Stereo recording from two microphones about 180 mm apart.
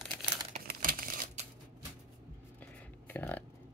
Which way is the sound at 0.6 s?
50° right (ahead or behind).